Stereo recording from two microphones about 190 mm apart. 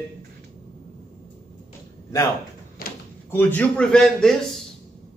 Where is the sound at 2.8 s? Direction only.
50° left (ahead or behind).